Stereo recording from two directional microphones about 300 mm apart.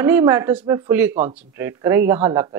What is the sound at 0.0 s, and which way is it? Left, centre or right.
Speech, centre.